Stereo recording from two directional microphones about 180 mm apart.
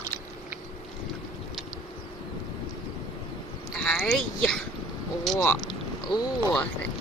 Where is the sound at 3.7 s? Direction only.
5° left (ahead or behind).